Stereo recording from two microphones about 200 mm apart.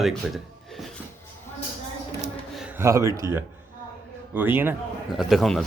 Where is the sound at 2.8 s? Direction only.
15° right (ahead or behind).